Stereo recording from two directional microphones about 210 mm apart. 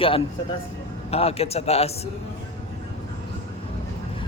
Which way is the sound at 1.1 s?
30° left (ahead or behind).